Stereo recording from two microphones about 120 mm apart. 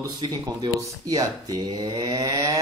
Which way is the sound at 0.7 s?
30° right (ahead or behind).